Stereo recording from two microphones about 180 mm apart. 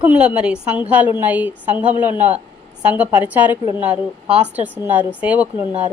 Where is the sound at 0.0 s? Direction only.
5° right (ahead or behind).